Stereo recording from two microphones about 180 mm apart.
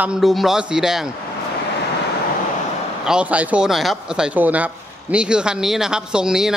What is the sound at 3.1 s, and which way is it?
Speech, 5° right (ahead or behind).